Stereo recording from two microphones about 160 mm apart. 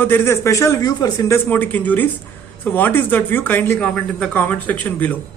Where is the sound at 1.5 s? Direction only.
10° left (ahead or behind).